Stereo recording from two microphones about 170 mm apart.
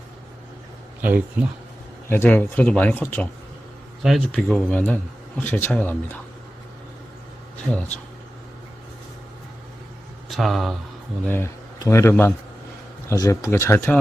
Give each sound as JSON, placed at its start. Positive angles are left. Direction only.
{"t": 1.0, "sound": "speech", "side_deg": -10}
{"t": 2.0, "sound": "speech", "side_deg": 10}
{"t": 10.2, "sound": "speech", "side_deg": 0}
{"t": 11.3, "sound": "speech", "side_deg": 15}